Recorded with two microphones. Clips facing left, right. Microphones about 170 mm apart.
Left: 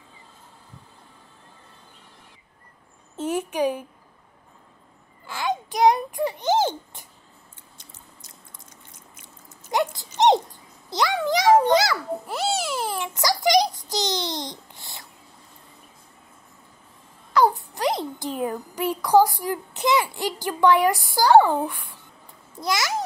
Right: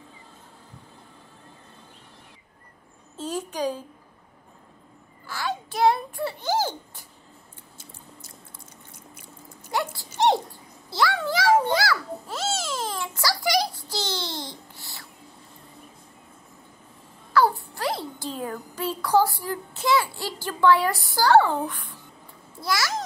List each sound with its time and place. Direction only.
3.2 s a woman's voice: 20° left (ahead or behind)
5.2 s a child's voice: 20° left (ahead or behind)
7.7 s a sound: 5° right (ahead or behind)
9.7 s a sound: 20° left (ahead or behind)
10.9 s babbling: 20° left (ahead or behind)
17.3 s a child's voice: 20° left (ahead or behind)
22.6 s babbling: 20° left (ahead or behind)